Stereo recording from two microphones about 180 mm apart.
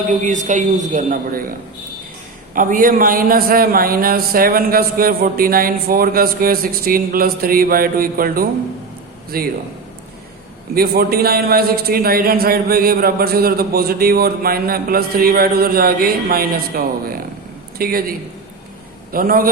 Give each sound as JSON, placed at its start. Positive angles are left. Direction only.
{"t": 0.1, "sound": "a man's voice", "side_deg": -45}
{"t": 2.6, "sound": "a man's voice", "side_deg": -50}
{"t": 10.8, "sound": "a man's voice", "side_deg": -60}
{"t": 19.1, "sound": "a man's voice", "side_deg": -50}